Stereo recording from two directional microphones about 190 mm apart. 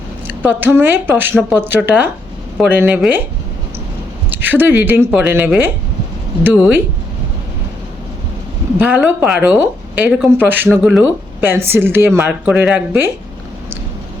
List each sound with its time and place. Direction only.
0.3 s speech: 10° right (ahead or behind)
4.3 s speech: 10° right (ahead or behind)
8.8 s speech: 10° right (ahead or behind)